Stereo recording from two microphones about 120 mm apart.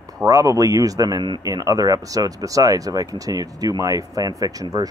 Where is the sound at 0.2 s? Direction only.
25° right (ahead or behind).